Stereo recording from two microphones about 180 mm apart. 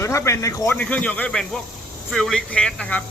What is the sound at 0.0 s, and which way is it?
Speech, 15° left (ahead or behind).